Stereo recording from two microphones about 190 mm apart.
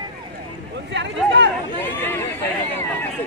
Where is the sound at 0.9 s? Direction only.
70° right (ahead or behind).